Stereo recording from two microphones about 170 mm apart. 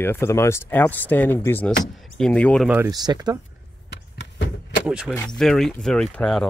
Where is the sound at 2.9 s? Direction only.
25° right (ahead or behind).